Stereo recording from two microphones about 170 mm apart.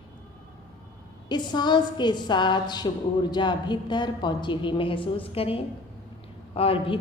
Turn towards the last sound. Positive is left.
turn(degrees=35)  # may be behind; listen again after turning